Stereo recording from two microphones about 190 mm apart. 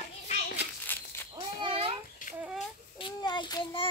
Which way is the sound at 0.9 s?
10° left (ahead or behind).